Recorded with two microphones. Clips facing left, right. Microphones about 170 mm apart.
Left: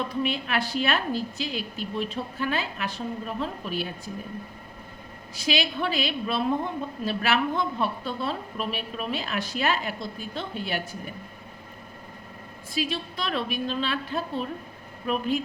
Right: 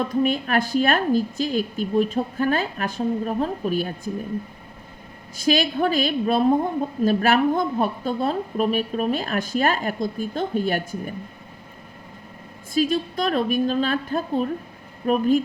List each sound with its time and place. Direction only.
0.0 s a woman's voice: 45° right (ahead or behind)
5.4 s a woman's voice: 45° right (ahead or behind)
12.7 s a woman's voice: 45° right (ahead or behind)